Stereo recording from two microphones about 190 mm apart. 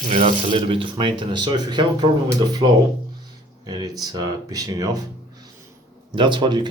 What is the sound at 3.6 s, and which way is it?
Speech, 20° right (ahead or behind).